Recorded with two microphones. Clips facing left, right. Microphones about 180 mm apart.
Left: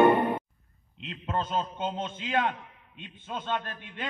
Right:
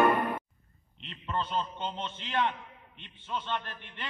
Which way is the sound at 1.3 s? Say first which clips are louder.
Left 2 dB; 45° left (ahead or behind).